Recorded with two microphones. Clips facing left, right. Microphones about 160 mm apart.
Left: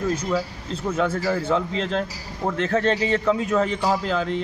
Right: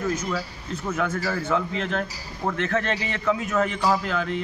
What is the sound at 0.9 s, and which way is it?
Speech, 30° left (ahead or behind).